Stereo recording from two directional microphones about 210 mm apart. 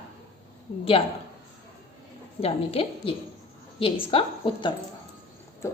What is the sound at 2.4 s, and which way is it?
A woman's voice, 25° left (ahead or behind).